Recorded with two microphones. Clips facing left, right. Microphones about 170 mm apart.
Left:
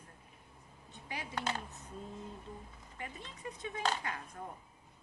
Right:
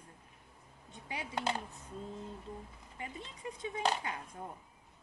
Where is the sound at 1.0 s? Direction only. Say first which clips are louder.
Right 2 dB; 25° right (ahead or behind).